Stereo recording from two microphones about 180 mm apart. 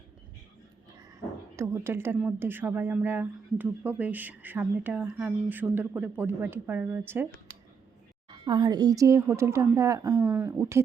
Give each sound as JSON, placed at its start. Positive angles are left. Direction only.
{"t": 1.5, "sound": "a woman's voice", "side_deg": -15}
{"t": 8.3, "sound": "a woman's voice", "side_deg": -25}
{"t": 10.2, "sound": "a woman's voice", "side_deg": -10}